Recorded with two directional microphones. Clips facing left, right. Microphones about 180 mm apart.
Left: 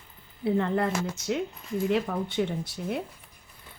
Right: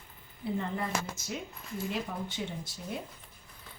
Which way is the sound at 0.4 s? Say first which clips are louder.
Left 8 dB; 70° left (ahead or behind).